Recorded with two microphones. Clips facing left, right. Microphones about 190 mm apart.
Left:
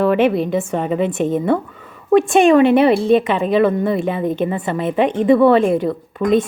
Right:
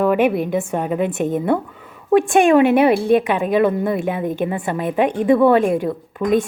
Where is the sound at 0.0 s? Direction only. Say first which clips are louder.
Left 1 dB; 10° right (ahead or behind).